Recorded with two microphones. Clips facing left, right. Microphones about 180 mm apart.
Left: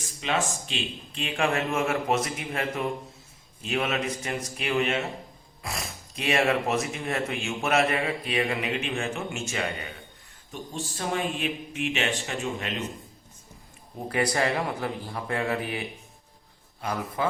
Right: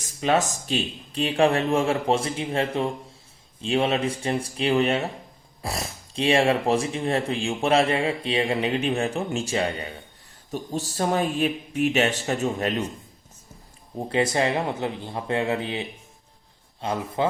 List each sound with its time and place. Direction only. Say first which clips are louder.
0.0 s speech: right 6 dB; 40° right (ahead or behind)
14.1 s speech: right 3 dB; 25° right (ahead or behind)